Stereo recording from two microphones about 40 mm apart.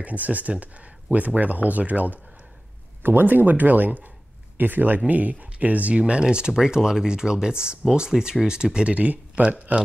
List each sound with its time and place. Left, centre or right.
0.0 s speech: right
3.0 s speech: right
6.2 s speech: centre
8.9 s speech: right